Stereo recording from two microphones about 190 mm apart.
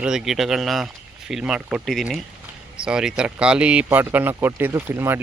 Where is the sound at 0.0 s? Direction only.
5° right (ahead or behind).